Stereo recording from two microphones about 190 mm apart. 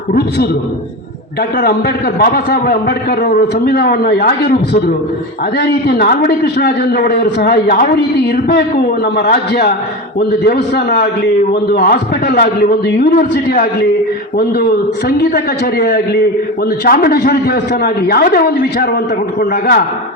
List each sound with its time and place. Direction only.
0.1 s a man's voice: 55° left (ahead or behind)